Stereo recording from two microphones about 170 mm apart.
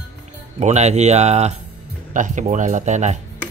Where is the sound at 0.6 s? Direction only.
40° right (ahead or behind).